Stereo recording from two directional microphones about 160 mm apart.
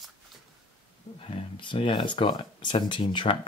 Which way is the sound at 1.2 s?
35° left (ahead or behind).